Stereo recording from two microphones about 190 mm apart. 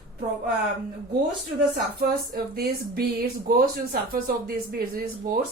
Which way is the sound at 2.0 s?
50° right (ahead or behind).